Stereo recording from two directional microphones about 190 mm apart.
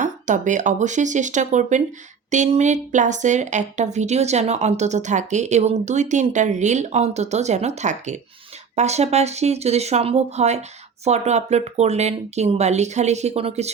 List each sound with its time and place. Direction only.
0.0 s speech: 40° right (ahead or behind)